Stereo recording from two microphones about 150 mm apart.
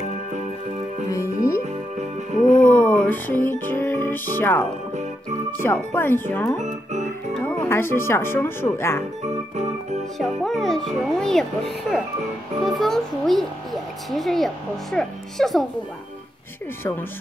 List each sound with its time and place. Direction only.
1.1 s music: 20° left (ahead or behind)
2.6 s music: 10° left (ahead or behind)
5.6 s speech: 15° left (ahead or behind)
10.1 s speech: centre (ahead or behind)